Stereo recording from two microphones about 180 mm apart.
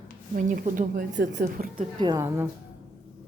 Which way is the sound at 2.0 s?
15° right (ahead or behind).